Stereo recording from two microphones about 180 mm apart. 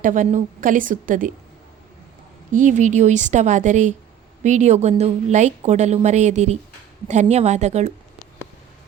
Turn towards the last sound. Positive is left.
turn(degrees=-40)  # may be behind; listen again after turning